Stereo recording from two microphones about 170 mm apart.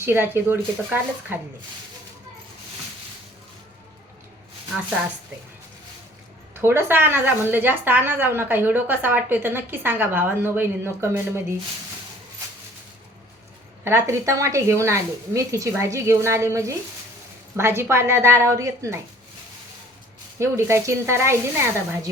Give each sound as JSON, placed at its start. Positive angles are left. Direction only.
{"t": 0.0, "sound": "a woman's voice", "side_deg": -15}
{"t": 6.5, "sound": "a woman's voice", "side_deg": -15}
{"t": 13.8, "sound": "a woman's voice", "side_deg": -15}
{"t": 20.4, "sound": "a woman's voice", "side_deg": -15}